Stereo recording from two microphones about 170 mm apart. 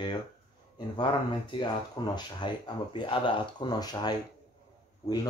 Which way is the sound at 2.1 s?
25° left (ahead or behind).